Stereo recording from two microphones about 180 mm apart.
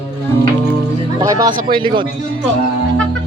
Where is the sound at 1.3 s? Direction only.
20° right (ahead or behind).